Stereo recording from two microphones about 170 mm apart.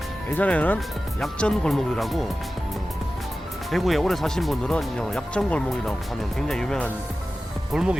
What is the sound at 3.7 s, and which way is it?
Speech, centre (ahead or behind).